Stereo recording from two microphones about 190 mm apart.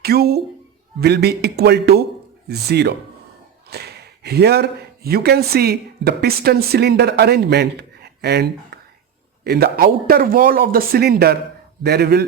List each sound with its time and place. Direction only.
0.0 s a man's voice: 55° right (ahead or behind)